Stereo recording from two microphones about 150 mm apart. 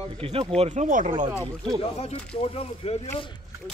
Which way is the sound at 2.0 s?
45° left (ahead or behind).